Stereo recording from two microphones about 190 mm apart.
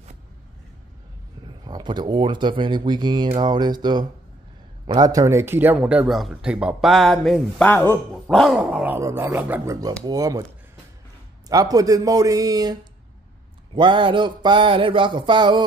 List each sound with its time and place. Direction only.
1.6 s speech: 20° right (ahead or behind)
11.4 s speech: 20° right (ahead or behind)
13.7 s speech: 25° right (ahead or behind)